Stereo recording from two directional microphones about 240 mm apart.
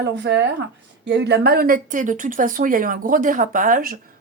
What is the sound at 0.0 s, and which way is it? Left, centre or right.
Speech, right.